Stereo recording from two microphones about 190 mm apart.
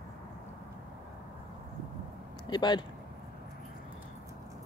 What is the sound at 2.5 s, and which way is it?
Speech, 25° left (ahead or behind).